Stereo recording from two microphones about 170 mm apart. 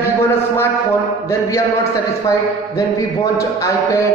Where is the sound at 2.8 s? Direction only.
20° left (ahead or behind).